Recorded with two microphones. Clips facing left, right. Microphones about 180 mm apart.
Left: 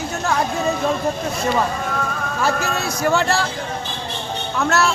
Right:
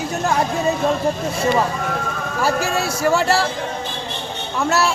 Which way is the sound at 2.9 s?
5° right (ahead or behind).